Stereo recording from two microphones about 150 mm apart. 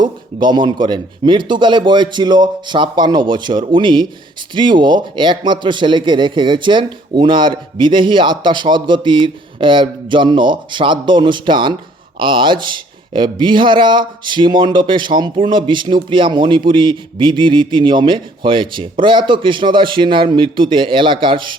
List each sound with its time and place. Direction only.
0.0 s a man's voice: 30° right (ahead or behind)